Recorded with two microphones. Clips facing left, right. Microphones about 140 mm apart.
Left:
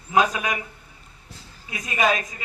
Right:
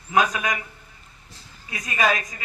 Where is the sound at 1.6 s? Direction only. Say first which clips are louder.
Left 1 dB; 20° left (ahead or behind).